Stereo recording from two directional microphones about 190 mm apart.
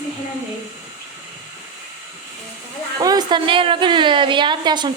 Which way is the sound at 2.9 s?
20° right (ahead or behind).